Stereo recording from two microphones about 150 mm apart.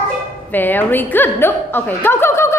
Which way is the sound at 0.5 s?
10° left (ahead or behind).